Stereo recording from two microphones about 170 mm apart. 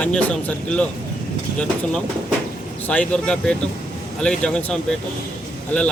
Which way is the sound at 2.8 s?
10° left (ahead or behind).